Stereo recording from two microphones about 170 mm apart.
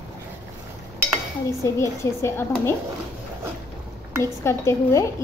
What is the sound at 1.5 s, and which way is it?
Speech, 15° left (ahead or behind).